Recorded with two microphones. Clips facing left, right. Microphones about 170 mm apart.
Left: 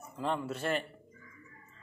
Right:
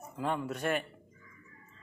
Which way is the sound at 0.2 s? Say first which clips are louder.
Right 1 dB; 5° right (ahead or behind).